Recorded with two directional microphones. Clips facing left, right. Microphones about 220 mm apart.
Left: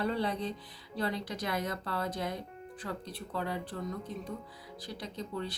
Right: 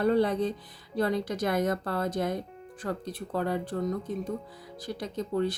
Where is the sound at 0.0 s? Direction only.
50° right (ahead or behind).